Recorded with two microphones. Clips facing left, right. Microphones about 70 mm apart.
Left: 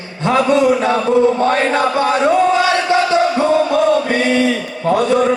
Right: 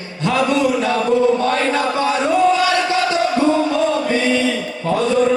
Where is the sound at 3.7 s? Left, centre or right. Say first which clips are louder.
Left 3 dB; left.